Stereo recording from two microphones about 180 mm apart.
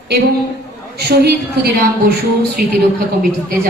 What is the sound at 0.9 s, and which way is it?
A woman's voice, 60° right (ahead or behind).